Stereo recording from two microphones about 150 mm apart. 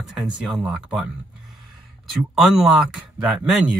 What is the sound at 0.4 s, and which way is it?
Speech, 5° right (ahead or behind).